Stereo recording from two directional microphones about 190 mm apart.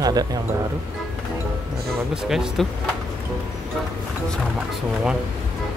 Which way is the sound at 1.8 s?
Centre (ahead or behind).